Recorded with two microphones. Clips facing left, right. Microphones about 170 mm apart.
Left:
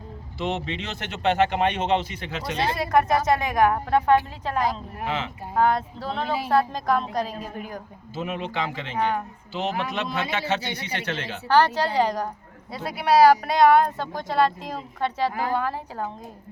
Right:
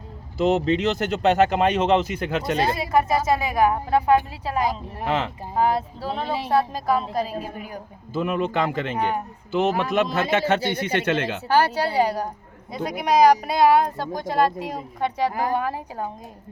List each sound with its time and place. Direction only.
0.3 s speech: 40° right (ahead or behind)
2.7 s speech: 5° right (ahead or behind)
5.0 s a man's voice: 45° right (ahead or behind)
5.5 s speech: 5° right (ahead or behind)
6.2 s speech: 35° right (ahead or behind)
6.5 s a woman's voice: 5° right (ahead or behind)
8.1 s a man's voice: 50° right (ahead or behind)
9.0 s speech: 10° right (ahead or behind)
9.5 s a man's voice: 50° right (ahead or behind)
11.4 s speech: 10° right (ahead or behind)
15.3 s speech: 40° right (ahead or behind)
15.5 s speech: 15° right (ahead or behind)